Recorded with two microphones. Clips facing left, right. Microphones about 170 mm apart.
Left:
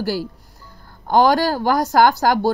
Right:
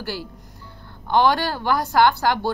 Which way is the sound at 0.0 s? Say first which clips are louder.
Left 7 dB; 40° left (ahead or behind).